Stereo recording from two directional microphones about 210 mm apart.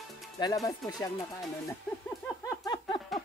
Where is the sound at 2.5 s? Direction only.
20° left (ahead or behind).